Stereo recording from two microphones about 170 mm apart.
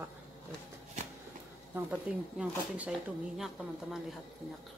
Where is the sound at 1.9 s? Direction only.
10° right (ahead or behind).